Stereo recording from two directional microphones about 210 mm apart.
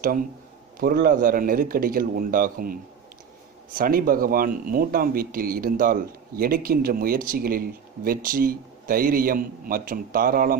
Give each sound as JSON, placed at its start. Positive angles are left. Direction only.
{"t": 0.7, "sound": "speech", "side_deg": -45}